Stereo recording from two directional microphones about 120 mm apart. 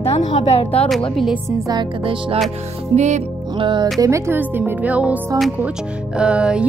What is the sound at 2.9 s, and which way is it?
Music, 80° right.